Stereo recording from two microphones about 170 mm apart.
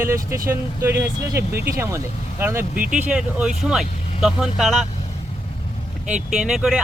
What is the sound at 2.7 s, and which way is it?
Speech, 55° right (ahead or behind).